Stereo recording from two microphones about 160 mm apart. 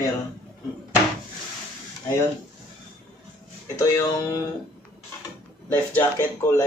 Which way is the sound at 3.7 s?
20° left (ahead or behind).